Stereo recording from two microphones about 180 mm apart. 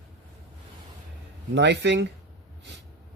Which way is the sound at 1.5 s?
75° right (ahead or behind).